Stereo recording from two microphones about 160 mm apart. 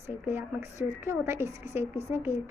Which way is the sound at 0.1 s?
15° right (ahead or behind).